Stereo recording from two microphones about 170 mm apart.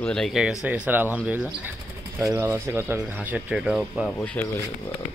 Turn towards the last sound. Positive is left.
turn(degrees=10)  # may be behind; listen again after turning